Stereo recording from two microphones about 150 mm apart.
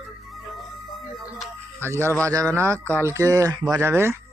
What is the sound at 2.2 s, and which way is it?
Speech, 20° right (ahead or behind).